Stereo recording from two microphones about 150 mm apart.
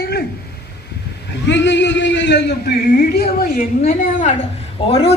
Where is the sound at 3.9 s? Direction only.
55° left (ahead or behind).